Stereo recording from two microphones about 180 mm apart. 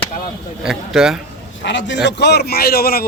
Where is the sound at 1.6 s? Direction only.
85° left; by 3.1 s 60° left (ahead or behind).